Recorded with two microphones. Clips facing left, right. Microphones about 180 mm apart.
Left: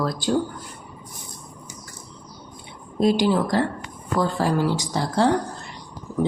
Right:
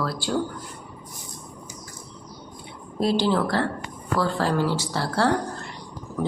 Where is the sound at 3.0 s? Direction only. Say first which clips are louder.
Left 3 dB; 15° left (ahead or behind).